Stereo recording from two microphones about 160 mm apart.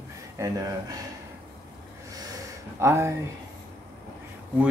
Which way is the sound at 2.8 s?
15° right (ahead or behind).